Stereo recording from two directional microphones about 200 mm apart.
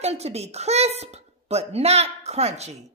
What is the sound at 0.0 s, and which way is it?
A child's voice, 30° right (ahead or behind).